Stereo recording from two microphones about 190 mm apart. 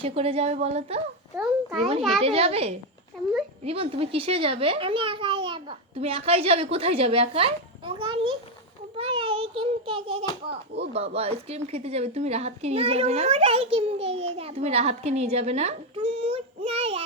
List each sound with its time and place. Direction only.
0.0 s speech: 30° right (ahead or behind)
1.4 s a child's voice: centre (ahead or behind)
2.2 s a child's voice: 30° right (ahead or behind)